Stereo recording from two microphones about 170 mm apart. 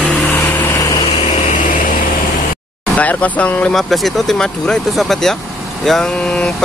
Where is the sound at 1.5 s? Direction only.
50° left (ahead or behind).